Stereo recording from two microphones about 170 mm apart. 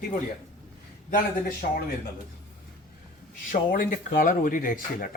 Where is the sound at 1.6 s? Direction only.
55° left (ahead or behind).